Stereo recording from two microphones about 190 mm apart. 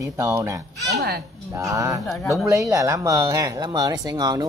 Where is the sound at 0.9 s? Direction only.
60° right (ahead or behind).